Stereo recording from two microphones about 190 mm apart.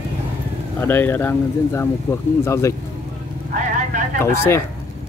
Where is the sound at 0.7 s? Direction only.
10° left (ahead or behind).